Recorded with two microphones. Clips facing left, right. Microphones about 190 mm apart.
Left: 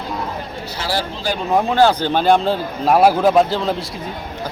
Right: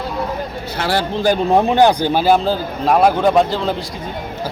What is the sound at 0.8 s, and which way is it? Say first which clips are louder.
Speech: right 5 dB; 60° right (ahead or behind).